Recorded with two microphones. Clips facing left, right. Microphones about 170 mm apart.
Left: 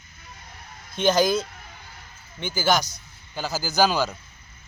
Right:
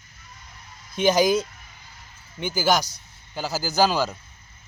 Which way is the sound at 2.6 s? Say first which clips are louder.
Even; 10° right (ahead or behind).